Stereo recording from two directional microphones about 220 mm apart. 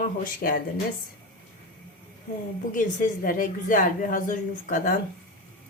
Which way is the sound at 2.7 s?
35° left (ahead or behind).